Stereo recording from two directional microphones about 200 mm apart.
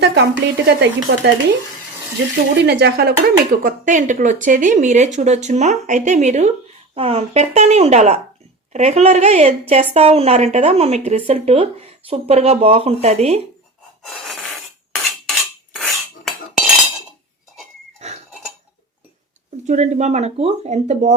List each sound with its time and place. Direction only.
0.0 s speech: 60° right (ahead or behind)
2.6 s speech: 55° right (ahead or behind); by 13.4 s 35° right (ahead or behind)
14.0 s filing: centre (ahead or behind)
15.3 s cutlery: centre (ahead or behind)
18.0 s goat: 35° right (ahead or behind)
19.6 s speech: 35° right (ahead or behind)